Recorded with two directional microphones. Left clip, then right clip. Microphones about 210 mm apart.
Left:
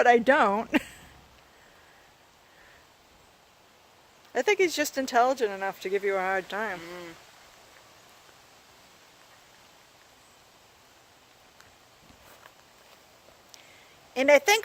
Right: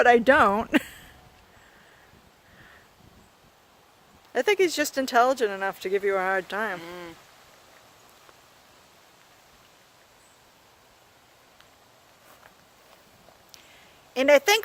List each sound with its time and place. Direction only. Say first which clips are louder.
0.0 s speech: right 3 dB; 15° right (ahead or behind)
4.3 s speech: right 2 dB; 15° right (ahead or behind)
6.8 s speech: right 2 dB; 45° right (ahead or behind)
14.1 s speech: right 1 dB; 15° right (ahead or behind)